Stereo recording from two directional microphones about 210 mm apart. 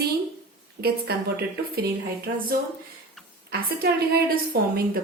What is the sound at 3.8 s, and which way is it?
A woman's voice, 45° right (ahead or behind).